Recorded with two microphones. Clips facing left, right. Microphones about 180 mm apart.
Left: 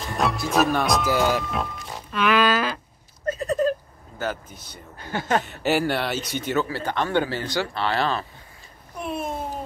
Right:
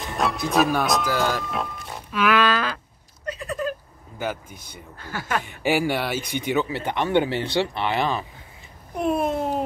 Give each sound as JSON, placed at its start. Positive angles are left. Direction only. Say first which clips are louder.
{"t": 0.0, "sound": "speech", "louder": "even", "side_deg": 0}
{"t": 3.3, "sound": "a sound", "louder": "left 6 dB", "side_deg": 40}
{"t": 4.2, "sound": "speech", "louder": "even", "side_deg": -10}
{"t": 4.9, "sound": "speech", "louder": "left 4 dB", "side_deg": 20}
{"t": 5.4, "sound": "speech", "louder": "even", "side_deg": -10}
{"t": 9.1, "sound": "a sound", "louder": "right 5 dB", "side_deg": -65}